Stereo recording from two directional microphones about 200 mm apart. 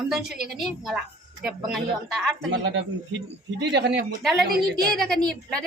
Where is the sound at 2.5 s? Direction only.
60° right (ahead or behind).